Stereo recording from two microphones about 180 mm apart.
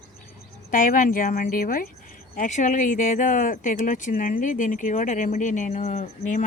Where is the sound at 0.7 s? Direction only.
50° left (ahead or behind).